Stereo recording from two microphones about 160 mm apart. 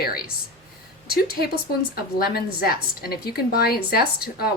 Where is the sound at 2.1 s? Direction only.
70° left (ahead or behind).